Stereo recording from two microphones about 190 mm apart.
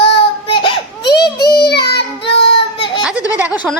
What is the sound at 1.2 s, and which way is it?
Child singing, 20° left (ahead or behind).